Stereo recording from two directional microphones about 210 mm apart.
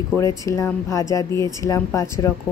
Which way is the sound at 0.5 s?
15° left (ahead or behind).